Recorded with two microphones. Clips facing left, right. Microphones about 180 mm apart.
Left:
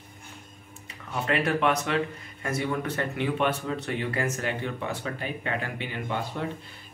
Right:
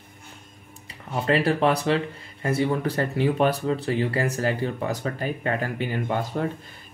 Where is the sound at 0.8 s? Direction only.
35° right (ahead or behind).